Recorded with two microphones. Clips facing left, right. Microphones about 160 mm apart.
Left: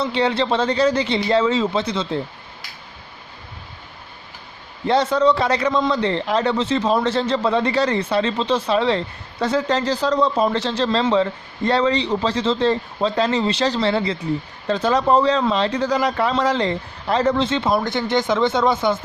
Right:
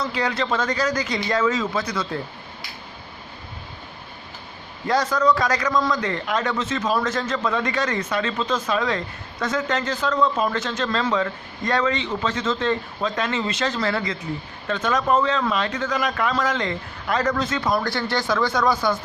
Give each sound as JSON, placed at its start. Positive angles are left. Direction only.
{"t": 0.0, "sound": "speech", "side_deg": 30}
{"t": 4.9, "sound": "a man's voice", "side_deg": 25}